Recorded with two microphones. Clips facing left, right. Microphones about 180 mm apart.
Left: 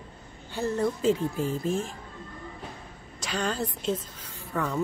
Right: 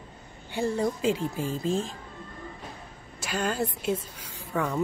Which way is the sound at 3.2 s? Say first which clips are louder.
Right 1 dB; 5° right (ahead or behind).